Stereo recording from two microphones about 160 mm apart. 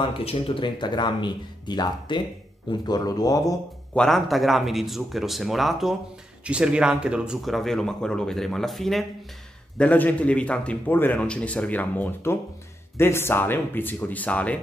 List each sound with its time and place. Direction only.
0.0 s speech: 35° left (ahead or behind)
3.9 s a man's voice: centre (ahead or behind)